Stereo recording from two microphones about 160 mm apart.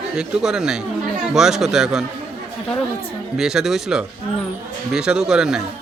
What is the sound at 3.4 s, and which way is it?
A man's voice, centre (ahead or behind).